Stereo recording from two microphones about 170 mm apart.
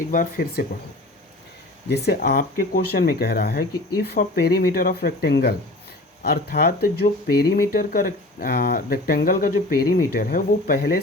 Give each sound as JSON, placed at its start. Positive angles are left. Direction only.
{"t": 0.1, "sound": "speech", "side_deg": 55}
{"t": 1.9, "sound": "speech", "side_deg": 70}
{"t": 6.2, "sound": "speech", "side_deg": 60}